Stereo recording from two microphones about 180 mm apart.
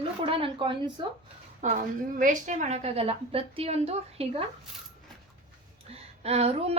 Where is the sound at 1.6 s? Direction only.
45° right (ahead or behind).